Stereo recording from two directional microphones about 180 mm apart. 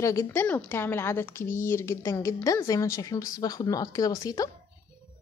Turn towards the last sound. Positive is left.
turn(degrees=20)  # may be behind; listen again after turning